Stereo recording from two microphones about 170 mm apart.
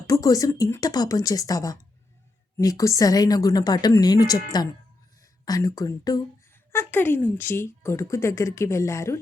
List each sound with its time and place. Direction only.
0.1 s a woman's voice: 20° left (ahead or behind)